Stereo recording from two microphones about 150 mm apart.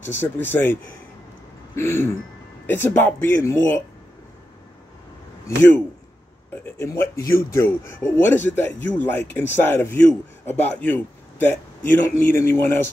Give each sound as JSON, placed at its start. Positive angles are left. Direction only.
{"t": 0.0, "sound": "speech", "side_deg": 15}
{"t": 1.8, "sound": "speech", "side_deg": 15}
{"t": 5.6, "sound": "speech", "side_deg": 10}